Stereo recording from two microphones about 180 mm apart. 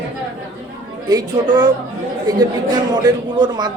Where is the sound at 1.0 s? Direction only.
20° right (ahead or behind).